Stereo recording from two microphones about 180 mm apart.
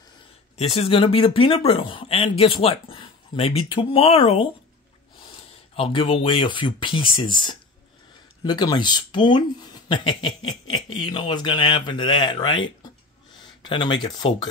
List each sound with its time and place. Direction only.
0.6 s speech: 35° left (ahead or behind)